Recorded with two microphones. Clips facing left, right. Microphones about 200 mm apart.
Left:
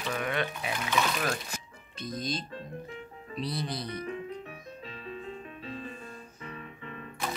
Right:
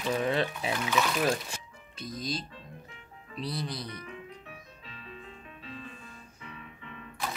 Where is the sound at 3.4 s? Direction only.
Centre (ahead or behind).